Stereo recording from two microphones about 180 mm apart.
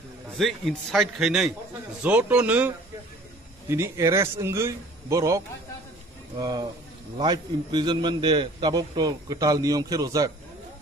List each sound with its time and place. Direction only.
0.4 s a man's voice: centre (ahead or behind); by 10.3 s 20° right (ahead or behind)